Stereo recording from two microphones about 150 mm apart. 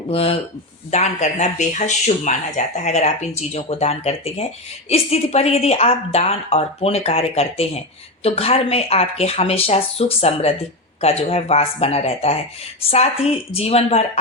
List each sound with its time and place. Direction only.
0.1 s speech: 40° left (ahead or behind)
0.9 s speech: 50° left (ahead or behind)